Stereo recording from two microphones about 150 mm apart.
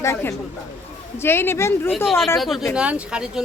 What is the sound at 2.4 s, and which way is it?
Speech, centre (ahead or behind).